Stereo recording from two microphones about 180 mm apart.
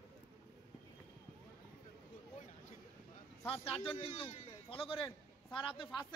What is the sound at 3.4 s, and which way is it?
A man's voice, 30° left (ahead or behind).